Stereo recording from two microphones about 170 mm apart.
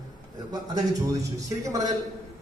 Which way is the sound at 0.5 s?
20° right (ahead or behind).